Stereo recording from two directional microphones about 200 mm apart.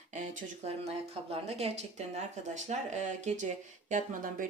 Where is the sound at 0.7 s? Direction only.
30° right (ahead or behind).